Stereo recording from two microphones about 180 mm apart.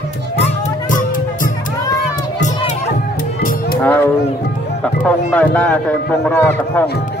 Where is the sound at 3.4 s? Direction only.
50° left (ahead or behind).